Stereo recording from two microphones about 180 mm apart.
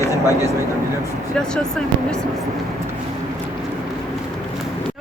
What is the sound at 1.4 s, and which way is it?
Speech, 5° left (ahead or behind).